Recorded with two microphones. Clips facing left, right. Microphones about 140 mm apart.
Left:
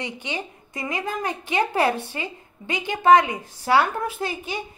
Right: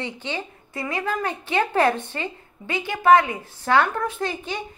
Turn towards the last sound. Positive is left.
turn(degrees=10)  # may be behind; listen again after turning